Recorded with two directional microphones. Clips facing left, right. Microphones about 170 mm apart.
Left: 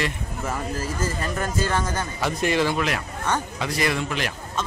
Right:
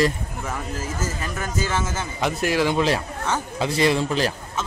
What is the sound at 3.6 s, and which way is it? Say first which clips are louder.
Speech: right 7 dB; 25° right (ahead or behind).